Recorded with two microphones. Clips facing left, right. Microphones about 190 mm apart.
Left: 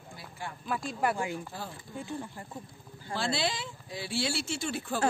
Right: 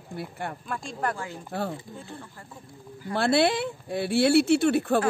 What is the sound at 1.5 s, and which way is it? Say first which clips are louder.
Music: right 10 dB; 65° right (ahead or behind).